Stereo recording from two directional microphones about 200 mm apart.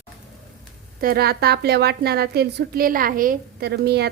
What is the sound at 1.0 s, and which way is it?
A woman's voice, 50° right (ahead or behind).